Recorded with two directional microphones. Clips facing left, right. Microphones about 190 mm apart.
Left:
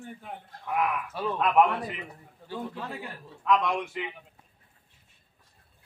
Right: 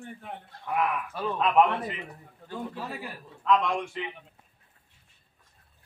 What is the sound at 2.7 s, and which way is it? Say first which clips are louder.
Speech: right 1 dB; 10° right (ahead or behind).